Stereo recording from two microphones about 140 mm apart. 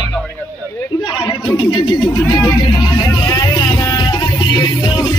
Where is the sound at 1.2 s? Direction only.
30° left (ahead or behind).